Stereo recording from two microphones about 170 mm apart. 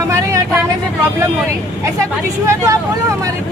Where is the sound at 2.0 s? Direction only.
20° right (ahead or behind).